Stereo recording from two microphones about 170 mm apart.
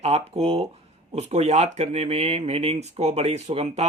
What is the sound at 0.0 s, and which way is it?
Speech, 40° right (ahead or behind).